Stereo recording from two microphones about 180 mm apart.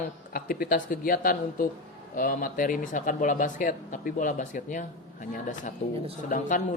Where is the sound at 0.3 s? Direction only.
55° left (ahead or behind).